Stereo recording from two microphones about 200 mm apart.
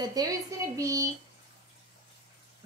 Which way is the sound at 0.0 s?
20° right (ahead or behind).